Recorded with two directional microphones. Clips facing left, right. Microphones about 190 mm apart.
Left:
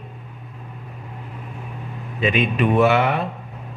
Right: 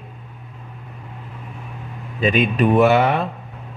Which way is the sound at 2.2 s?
35° right (ahead or behind).